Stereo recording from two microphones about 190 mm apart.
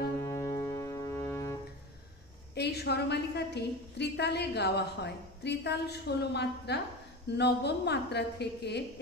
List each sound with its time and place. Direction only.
0.2 s music: 15° left (ahead or behind)
2.5 s a woman's voice: 60° left (ahead or behind)